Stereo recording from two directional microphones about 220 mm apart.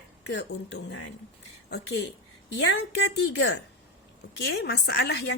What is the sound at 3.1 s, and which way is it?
A woman's voice, 50° left (ahead or behind).